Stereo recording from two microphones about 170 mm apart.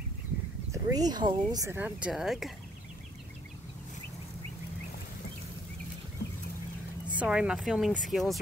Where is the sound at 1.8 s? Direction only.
10° right (ahead or behind).